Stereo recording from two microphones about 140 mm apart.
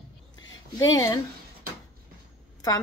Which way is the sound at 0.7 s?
25° left (ahead or behind).